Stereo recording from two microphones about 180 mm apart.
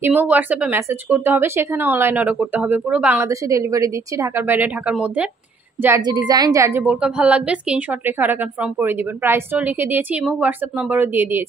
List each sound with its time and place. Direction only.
0.0 s a woman's voice: 10° right (ahead or behind)
3.3 s a woman's voice: 15° right (ahead or behind)